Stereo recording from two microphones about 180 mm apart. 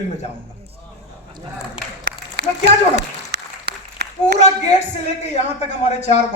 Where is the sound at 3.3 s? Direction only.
65° right (ahead or behind).